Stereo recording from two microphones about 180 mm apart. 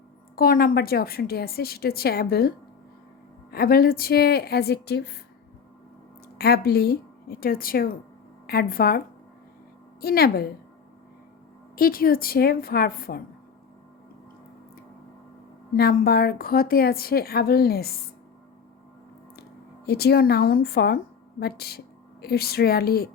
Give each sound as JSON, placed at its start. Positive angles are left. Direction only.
{"t": 0.3, "sound": "a woman's voice", "side_deg": 55}
{"t": 6.4, "sound": "a woman's voice", "side_deg": 60}
{"t": 10.0, "sound": "a woman's voice", "side_deg": 55}
{"t": 11.8, "sound": "a woman's voice", "side_deg": 55}
{"t": 15.7, "sound": "a woman's voice", "side_deg": 60}
{"t": 19.8, "sound": "a woman's voice", "side_deg": 60}